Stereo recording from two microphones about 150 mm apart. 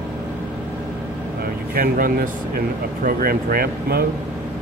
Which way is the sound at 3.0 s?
85° right.